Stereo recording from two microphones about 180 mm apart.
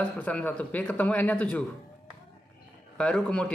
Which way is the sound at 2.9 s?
5° left (ahead or behind).